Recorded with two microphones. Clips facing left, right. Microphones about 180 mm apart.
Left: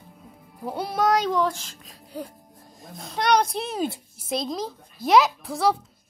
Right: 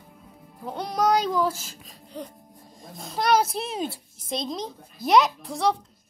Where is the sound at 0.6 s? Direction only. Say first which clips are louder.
Left 1 dB; 10° left (ahead or behind).